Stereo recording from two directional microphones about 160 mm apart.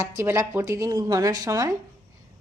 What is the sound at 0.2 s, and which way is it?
Speech, 15° right (ahead or behind).